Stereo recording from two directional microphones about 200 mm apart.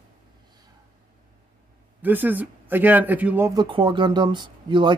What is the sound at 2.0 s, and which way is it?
Speech, 10° right (ahead or behind).